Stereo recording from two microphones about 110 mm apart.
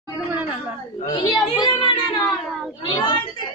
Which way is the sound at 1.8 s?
50° left (ahead or behind).